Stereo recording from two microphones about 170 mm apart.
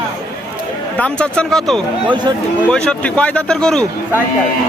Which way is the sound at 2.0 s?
25° right (ahead or behind).